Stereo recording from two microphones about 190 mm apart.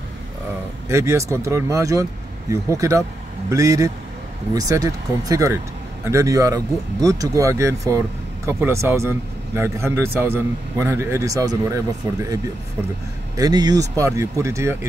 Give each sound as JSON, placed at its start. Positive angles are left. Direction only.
{"t": 0.8, "sound": "speech", "side_deg": -15}
{"t": 13.4, "sound": "speech", "side_deg": -20}